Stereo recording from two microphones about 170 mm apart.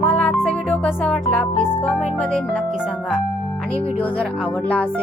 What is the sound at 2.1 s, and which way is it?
Speech, 5° left (ahead or behind).